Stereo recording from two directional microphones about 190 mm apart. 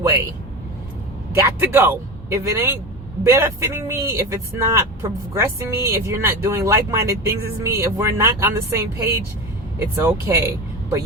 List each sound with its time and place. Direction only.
0.0 s speech: 15° right (ahead or behind)
1.4 s speech: 15° right (ahead or behind)